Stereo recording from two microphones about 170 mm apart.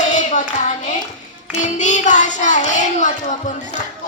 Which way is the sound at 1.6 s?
45° left (ahead or behind).